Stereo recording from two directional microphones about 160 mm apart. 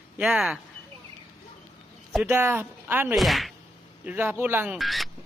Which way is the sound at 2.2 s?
15° right (ahead or behind).